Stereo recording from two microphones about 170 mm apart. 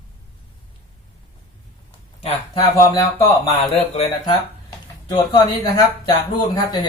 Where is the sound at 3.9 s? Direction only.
40° left (ahead or behind).